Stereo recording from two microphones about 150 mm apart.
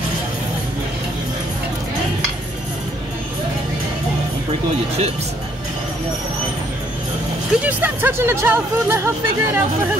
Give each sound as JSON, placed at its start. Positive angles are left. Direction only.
{"t": 7.6, "sound": "speech", "side_deg": -10}